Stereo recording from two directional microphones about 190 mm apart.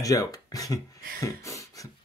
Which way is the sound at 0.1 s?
20° left (ahead or behind).